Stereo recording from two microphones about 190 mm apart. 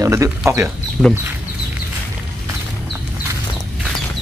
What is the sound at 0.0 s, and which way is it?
Speech, 15° right (ahead or behind).